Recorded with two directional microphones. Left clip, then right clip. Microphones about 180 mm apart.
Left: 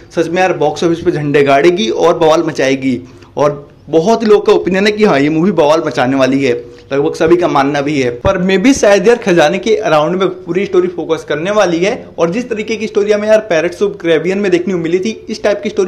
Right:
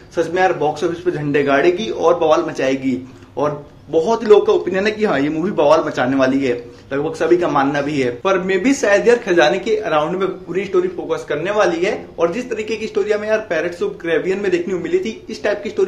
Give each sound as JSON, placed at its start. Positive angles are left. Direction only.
{"t": 0.1, "sound": "a man's voice", "side_deg": 45}